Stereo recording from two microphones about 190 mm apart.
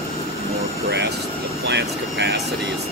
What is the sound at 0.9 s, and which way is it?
Speech, 65° right (ahead or behind).